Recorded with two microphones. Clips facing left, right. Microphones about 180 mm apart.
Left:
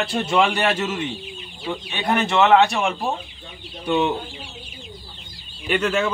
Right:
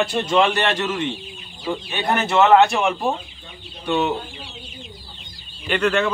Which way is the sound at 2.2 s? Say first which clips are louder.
Right 2 dB; 5° right (ahead or behind).